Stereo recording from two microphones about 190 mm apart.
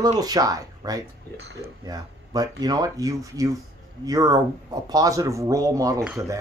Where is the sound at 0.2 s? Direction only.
20° right (ahead or behind).